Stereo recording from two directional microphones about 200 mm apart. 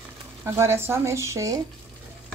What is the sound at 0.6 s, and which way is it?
Speech, 10° right (ahead or behind).